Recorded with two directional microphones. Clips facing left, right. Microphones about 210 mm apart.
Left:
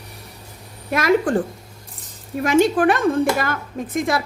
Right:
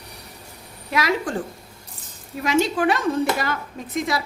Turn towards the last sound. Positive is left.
turn(degrees=50)  # may be behind; listen again after turning